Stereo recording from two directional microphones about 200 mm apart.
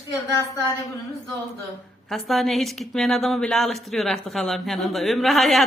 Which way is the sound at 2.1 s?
Centre (ahead or behind).